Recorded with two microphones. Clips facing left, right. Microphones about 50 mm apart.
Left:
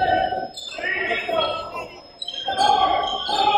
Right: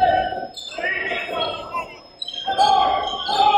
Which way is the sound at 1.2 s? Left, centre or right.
Left.